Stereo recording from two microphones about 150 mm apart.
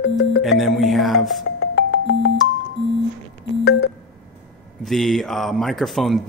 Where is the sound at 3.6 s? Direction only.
90° left.